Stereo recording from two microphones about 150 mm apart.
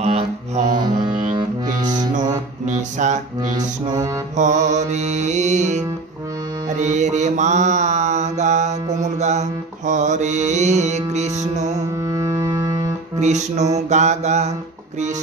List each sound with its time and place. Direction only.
0.0 s mantra: 50° right (ahead or behind)
0.7 s music: 30° right (ahead or behind)
2.6 s music: 55° right (ahead or behind)
3.5 s music: 25° right (ahead or behind)
4.4 s music: 55° right (ahead or behind)
6.7 s mantra: 50° right (ahead or behind)
11.7 s music: 20° right (ahead or behind)
13.2 s music: 50° right (ahead or behind)